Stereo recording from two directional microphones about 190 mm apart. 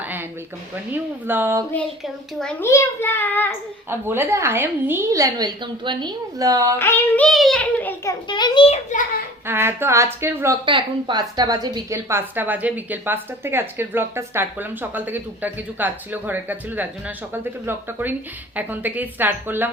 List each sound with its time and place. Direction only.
0.0 s a sound: 10° right (ahead or behind)
1.3 s a woman's voice: 10° right (ahead or behind)
2.4 s a child's voice: 10° left (ahead or behind)
3.8 s a woman's voice: 10° right (ahead or behind)
6.7 s a child's voice: 10° left (ahead or behind)
7.3 s a child's voice: centre (ahead or behind)
8.3 s a child's voice: 25° left (ahead or behind)
9.5 s a woman's voice: 10° right (ahead or behind)
10.7 s a woman's voice: 25° right (ahead or behind); by 19.7 s 10° right (ahead or behind)